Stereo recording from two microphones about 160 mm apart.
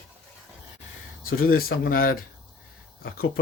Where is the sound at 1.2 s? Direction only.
70° left (ahead or behind).